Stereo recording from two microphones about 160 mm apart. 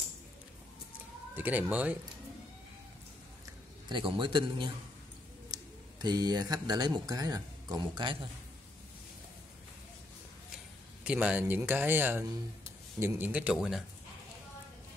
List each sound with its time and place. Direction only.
1.3 s speech: 10° right (ahead or behind)
3.9 s a man's voice: 30° right (ahead or behind)
11.1 s speech: 10° right (ahead or behind)